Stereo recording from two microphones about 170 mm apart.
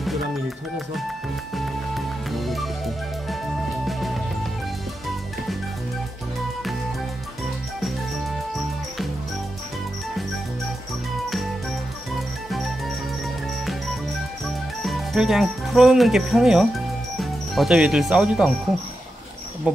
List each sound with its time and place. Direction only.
1.5 s music: centre (ahead or behind)
3.8 s music: centre (ahead or behind)
12.1 s music: centre (ahead or behind)
14.8 s speech: centre (ahead or behind)